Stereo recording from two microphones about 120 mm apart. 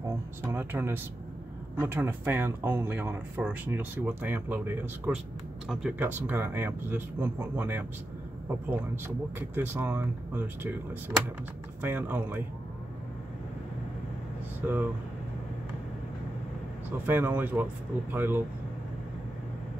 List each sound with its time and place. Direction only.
0.0 s speech: 20° right (ahead or behind)
14.6 s speech: 10° right (ahead or behind)
17.0 s speech: 15° right (ahead or behind)